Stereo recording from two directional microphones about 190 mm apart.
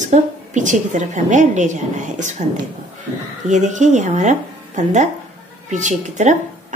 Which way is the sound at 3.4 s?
40° right (ahead or behind).